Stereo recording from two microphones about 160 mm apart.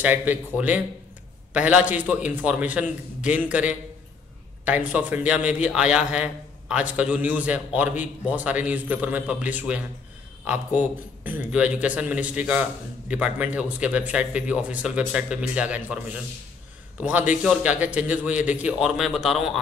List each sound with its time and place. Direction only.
0.0 s a man's voice: 10° right (ahead or behind)